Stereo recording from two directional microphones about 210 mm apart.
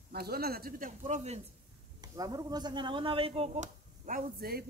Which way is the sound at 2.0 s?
20° right (ahead or behind).